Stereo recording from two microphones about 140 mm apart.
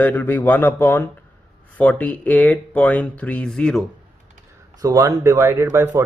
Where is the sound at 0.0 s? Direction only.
10° left (ahead or behind).